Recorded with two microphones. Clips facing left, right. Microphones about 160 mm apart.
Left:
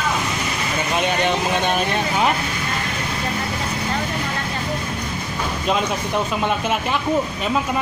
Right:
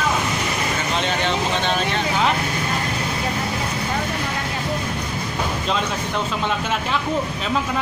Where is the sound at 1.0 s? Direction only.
15° left (ahead or behind).